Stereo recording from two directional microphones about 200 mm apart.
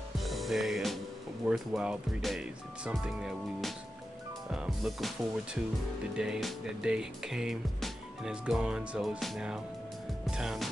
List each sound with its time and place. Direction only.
0.2 s music: centre (ahead or behind)
1.5 s speech: 5° right (ahead or behind)
10.3 s music: centre (ahead or behind)